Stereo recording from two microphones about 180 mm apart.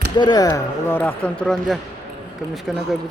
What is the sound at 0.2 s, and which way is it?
Speech, 20° left (ahead or behind).